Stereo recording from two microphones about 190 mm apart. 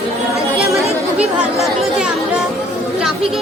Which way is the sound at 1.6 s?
Centre (ahead or behind).